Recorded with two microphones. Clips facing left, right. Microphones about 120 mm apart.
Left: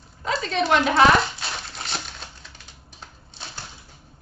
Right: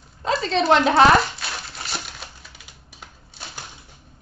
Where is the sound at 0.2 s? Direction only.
30° right (ahead or behind).